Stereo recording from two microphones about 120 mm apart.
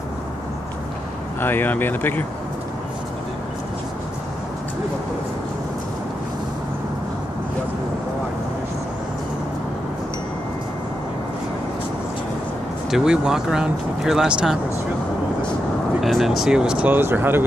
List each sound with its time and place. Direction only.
1.4 s speech: 15° left (ahead or behind)
12.9 s speech: 5° right (ahead or behind)
16.0 s speech: centre (ahead or behind); by 17.4 s 15° right (ahead or behind)